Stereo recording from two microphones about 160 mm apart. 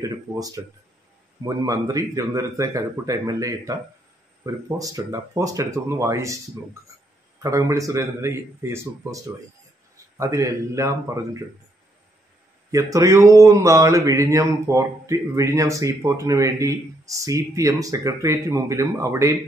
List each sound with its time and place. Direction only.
0.0 s a sound: 20° right (ahead or behind)
1.4 s speech: 20° right (ahead or behind)
7.4 s speech: 20° right (ahead or behind)
12.7 s speech: 20° right (ahead or behind)